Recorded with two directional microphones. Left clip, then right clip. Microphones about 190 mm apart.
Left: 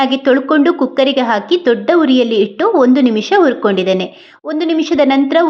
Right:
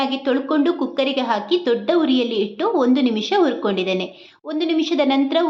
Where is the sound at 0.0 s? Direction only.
35° left (ahead or behind).